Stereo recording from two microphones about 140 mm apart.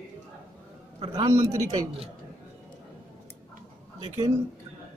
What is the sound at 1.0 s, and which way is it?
Speech, 30° right (ahead or behind).